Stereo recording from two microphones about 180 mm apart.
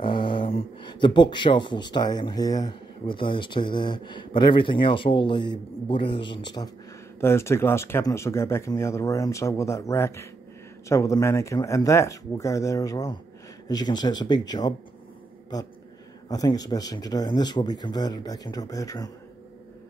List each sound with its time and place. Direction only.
0.0 s speech: 30° left (ahead or behind)
16.3 s speech: 20° left (ahead or behind)